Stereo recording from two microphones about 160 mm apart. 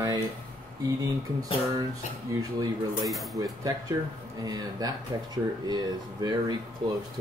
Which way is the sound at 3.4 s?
25° right (ahead or behind).